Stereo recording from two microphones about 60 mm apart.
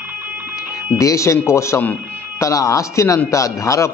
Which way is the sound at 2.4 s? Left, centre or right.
Left.